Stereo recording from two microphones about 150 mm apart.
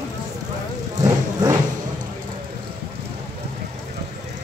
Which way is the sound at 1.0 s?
20° right (ahead or behind).